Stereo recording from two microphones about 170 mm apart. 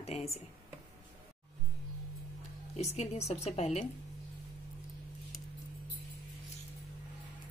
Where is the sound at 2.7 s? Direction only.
40° left (ahead or behind).